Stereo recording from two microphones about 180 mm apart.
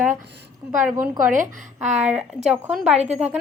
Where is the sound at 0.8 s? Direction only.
10° right (ahead or behind).